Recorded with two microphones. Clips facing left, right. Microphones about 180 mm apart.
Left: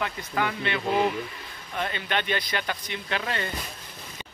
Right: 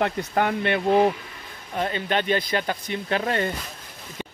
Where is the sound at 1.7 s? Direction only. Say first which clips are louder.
Right 4 dB; 40° right (ahead or behind).